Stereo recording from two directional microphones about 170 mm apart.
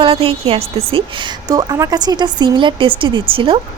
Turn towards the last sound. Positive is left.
turn(degrees=-30)  # may be behind; listen again after turning